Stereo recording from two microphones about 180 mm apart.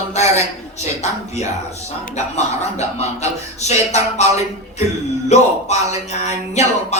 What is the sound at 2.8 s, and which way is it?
Speech, 40° left (ahead or behind).